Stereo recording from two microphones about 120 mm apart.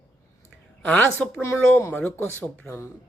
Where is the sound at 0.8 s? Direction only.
10° left (ahead or behind).